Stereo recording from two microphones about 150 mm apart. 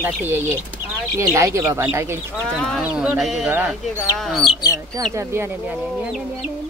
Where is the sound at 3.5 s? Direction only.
10° right (ahead or behind).